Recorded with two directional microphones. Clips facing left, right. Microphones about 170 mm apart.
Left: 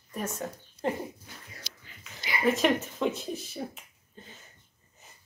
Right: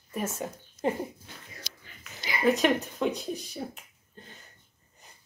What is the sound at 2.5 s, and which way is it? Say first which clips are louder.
Speech: right 1 dB; centre (ahead or behind).